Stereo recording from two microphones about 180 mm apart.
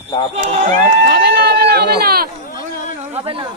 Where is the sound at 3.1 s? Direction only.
30° right (ahead or behind).